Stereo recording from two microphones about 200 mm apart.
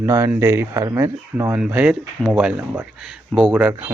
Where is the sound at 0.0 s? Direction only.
15° right (ahead or behind).